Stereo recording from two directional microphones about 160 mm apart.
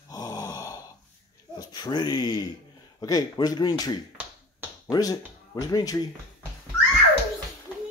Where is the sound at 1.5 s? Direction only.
25° left (ahead or behind).